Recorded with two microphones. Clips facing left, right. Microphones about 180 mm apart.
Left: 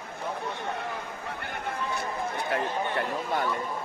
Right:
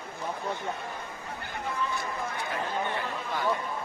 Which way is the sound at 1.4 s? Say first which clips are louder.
Right 1 dB; 65° left (ahead or behind).